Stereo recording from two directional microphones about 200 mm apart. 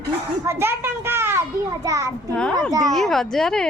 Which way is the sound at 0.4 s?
10° right (ahead or behind).